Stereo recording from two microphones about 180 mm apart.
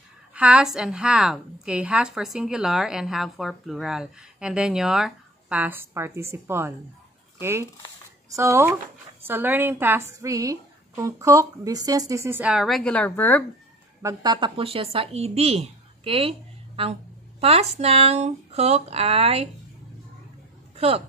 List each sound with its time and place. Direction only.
0.3 s a woman's voice: 5° right (ahead or behind); by 13.4 s 10° left (ahead or behind)
14.0 s a woman's voice: 25° right (ahead or behind)
20.7 s speech: 35° right (ahead or behind)